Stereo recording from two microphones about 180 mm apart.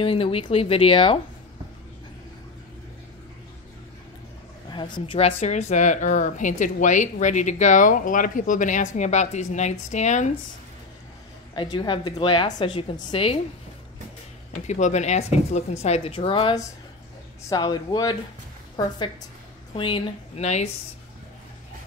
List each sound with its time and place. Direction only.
0.0 s speech: 30° left (ahead or behind)
4.6 s speech: 25° left (ahead or behind); by 10.3 s 40° left (ahead or behind)
11.5 s a woman's voice: 25° left (ahead or behind)
14.5 s a woman's voice: 40° left (ahead or behind); by 18.1 s 25° left (ahead or behind)
19.7 s speech: 30° left (ahead or behind)